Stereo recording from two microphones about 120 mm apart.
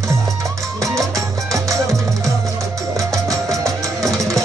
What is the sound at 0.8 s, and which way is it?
Music, 25° right (ahead or behind).